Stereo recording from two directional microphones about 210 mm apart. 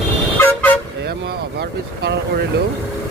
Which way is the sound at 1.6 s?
50° right (ahead or behind).